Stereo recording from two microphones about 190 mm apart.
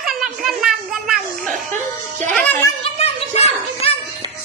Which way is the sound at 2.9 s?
35° left (ahead or behind).